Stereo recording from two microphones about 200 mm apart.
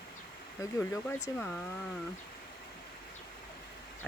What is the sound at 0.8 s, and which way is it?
Speech, 10° left (ahead or behind).